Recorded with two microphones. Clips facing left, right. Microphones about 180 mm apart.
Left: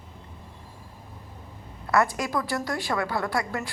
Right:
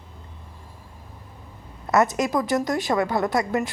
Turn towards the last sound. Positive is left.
turn(degrees=-20)  # may be behind; listen again after turning